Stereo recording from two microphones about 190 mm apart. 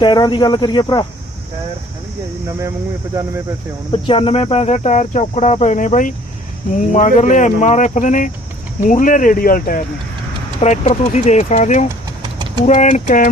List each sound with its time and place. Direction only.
0.0 s speech: 25° left (ahead or behind)
3.9 s speech: 30° left (ahead or behind); by 9.8 s 50° left (ahead or behind)
10.6 s speech: 35° left (ahead or behind)